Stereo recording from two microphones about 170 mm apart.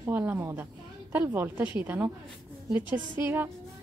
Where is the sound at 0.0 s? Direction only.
10° right (ahead or behind).